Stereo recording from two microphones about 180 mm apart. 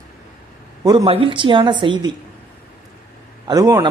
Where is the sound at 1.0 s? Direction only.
30° right (ahead or behind).